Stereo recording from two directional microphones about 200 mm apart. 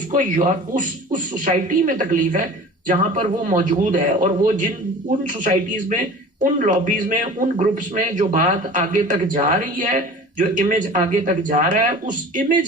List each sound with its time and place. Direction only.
0.1 s a man's voice: 40° right (ahead or behind)